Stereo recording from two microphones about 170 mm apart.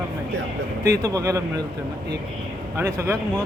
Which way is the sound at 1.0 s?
20° right (ahead or behind).